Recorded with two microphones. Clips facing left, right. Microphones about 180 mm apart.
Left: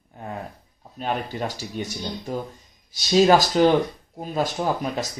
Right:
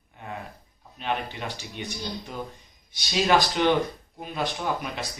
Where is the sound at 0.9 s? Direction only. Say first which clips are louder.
Left 3 dB; 40° left (ahead or behind).